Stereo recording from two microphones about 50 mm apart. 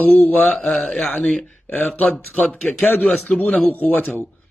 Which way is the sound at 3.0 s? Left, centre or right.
Left.